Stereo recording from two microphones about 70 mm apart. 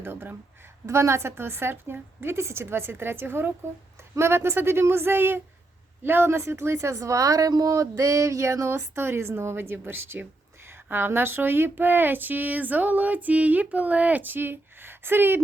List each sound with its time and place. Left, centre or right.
0.0 s a woman's voice: right
0.9 s a woman's voice: right